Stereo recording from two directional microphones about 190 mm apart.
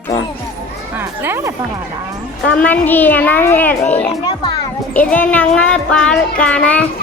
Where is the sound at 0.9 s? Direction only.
10° right (ahead or behind).